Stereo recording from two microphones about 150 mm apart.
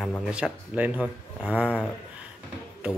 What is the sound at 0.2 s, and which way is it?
Speech, 5° right (ahead or behind).